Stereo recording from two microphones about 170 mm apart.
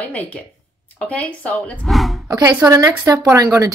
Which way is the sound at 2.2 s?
25° right (ahead or behind).